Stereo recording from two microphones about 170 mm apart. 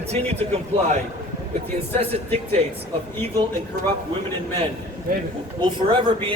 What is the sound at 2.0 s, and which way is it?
Speech, 35° right (ahead or behind).